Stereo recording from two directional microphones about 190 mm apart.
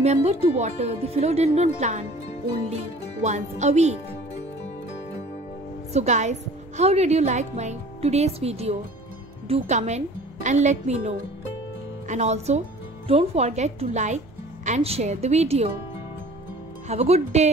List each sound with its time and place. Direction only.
0.0 s speech: 35° right (ahead or behind)
5.9 s speech: 40° right (ahead or behind)
16.8 s speech: 35° right (ahead or behind)